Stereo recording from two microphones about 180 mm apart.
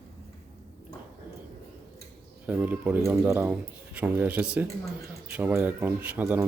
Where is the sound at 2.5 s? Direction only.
10° right (ahead or behind).